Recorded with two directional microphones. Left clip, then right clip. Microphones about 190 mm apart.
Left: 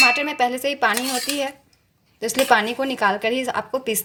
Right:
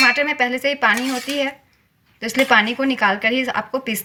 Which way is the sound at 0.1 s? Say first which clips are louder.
Right 2 dB; 35° left (ahead or behind).